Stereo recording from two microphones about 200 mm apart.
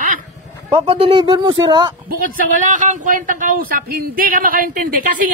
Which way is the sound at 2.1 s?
40° right (ahead or behind).